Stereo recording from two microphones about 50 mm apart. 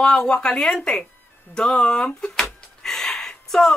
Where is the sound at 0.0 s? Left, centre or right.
Centre.